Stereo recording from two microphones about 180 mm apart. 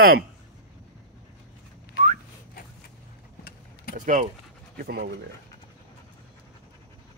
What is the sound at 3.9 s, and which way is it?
Speech, 45° right (ahead or behind).